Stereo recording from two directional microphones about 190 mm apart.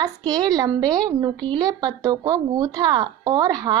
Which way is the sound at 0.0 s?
20° right (ahead or behind).